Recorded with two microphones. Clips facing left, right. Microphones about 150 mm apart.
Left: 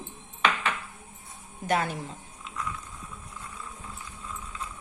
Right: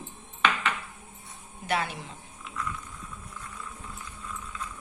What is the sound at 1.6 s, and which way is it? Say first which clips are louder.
Speech: left 3 dB; 45° left (ahead or behind).